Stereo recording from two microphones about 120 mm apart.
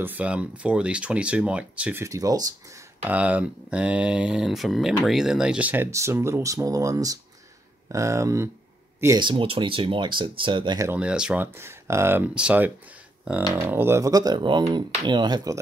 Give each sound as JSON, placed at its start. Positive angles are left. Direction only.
{"t": 0.0, "sound": "speech", "side_deg": -10}
{"t": 2.0, "sound": "speech", "side_deg": -30}
{"t": 3.1, "sound": "speech", "side_deg": -10}
{"t": 5.9, "sound": "speech", "side_deg": -25}
{"t": 9.2, "sound": "speech", "side_deg": -45}
{"t": 11.0, "sound": "speech", "side_deg": -5}
{"t": 11.5, "sound": "speech", "side_deg": -20}